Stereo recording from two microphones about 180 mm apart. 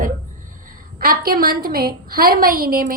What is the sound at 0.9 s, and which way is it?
A woman's voice, 50° right (ahead or behind).